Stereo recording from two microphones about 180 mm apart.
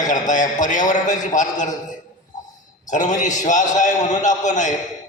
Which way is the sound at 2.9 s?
45° left (ahead or behind).